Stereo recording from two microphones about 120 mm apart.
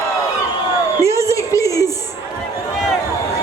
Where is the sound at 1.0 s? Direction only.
25° right (ahead or behind).